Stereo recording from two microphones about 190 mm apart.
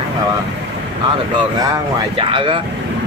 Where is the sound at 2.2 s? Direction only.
25° right (ahead or behind).